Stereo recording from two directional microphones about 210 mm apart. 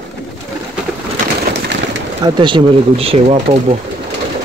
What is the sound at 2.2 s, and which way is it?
Speech, 20° right (ahead or behind).